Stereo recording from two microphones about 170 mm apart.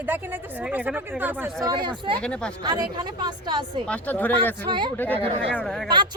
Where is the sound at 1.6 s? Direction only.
25° right (ahead or behind).